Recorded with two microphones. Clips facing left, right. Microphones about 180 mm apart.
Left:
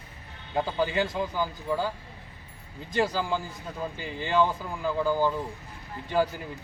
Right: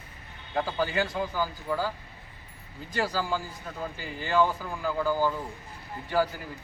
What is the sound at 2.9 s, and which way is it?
Speech, 20° left (ahead or behind).